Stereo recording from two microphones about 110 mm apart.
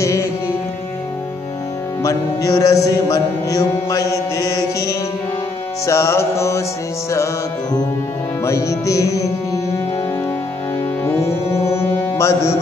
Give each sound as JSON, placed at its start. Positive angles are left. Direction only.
{"t": 0.0, "sound": "music", "side_deg": 30}
{"t": 2.0, "sound": "music", "side_deg": 30}
{"t": 8.5, "sound": "music", "side_deg": 30}
{"t": 11.1, "sound": "music", "side_deg": 25}